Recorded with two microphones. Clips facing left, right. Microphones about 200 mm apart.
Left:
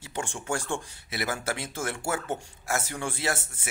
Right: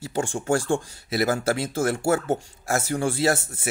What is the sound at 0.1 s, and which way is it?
Speech, 40° right (ahead or behind).